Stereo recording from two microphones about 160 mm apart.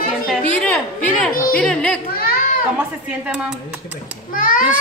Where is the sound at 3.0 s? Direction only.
5° right (ahead or behind).